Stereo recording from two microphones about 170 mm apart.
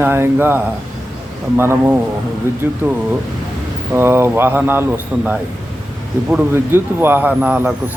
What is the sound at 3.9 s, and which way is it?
Speech, 15° right (ahead or behind).